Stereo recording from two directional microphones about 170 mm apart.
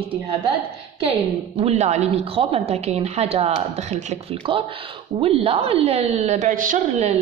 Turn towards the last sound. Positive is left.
turn(degrees=-45)  # may be behind; listen again after turning